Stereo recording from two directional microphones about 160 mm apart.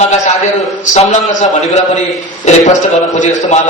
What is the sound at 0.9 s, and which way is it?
A man's voice, 50° left (ahead or behind).